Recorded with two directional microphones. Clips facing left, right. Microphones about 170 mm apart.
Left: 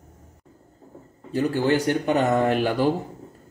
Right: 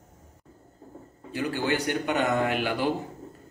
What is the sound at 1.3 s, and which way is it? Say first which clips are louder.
Speech: left 6 dB; 40° left (ahead or behind).